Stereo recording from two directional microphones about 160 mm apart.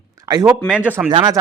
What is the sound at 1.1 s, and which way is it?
Speech, 25° right (ahead or behind).